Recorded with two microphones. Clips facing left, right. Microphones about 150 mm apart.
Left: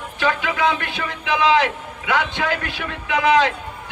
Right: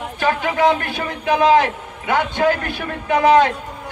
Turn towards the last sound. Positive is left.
turn(degrees=-40)  # may be behind; listen again after turning